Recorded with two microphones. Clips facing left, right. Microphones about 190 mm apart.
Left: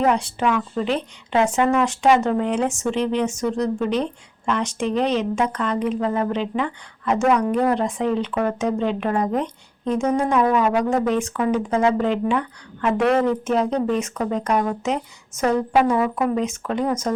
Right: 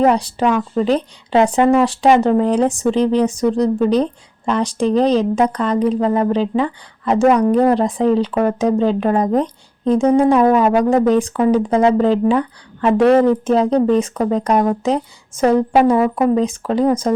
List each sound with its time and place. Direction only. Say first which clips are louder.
0.0 s speech: right 5 dB; 35° right (ahead or behind)